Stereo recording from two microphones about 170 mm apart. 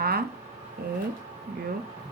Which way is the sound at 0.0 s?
65° right (ahead or behind).